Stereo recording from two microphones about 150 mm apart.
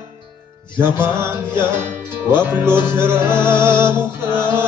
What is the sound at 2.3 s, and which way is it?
Music, 15° right (ahead or behind).